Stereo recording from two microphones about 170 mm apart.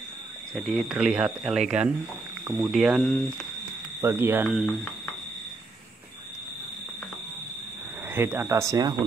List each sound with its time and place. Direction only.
0.6 s speech: centre (ahead or behind)
4.0 s speech: 15° right (ahead or behind)
4.6 s speech: centre (ahead or behind)
8.1 s speech: 15° right (ahead or behind)